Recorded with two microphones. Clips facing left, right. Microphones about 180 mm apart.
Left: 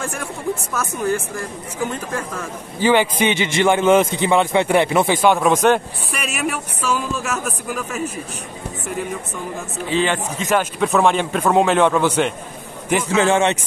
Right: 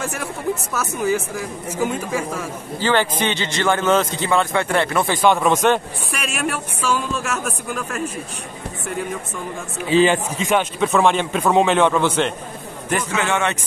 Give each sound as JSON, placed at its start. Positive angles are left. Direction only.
{"t": 0.0, "sound": "speech", "side_deg": -5}
{"t": 2.8, "sound": "a man's voice", "side_deg": 10}
{"t": 10.5, "sound": "speech", "side_deg": 0}
{"t": 13.1, "sound": "speech", "side_deg": 35}